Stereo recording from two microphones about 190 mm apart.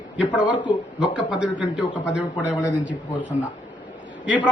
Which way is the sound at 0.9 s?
5° right (ahead or behind).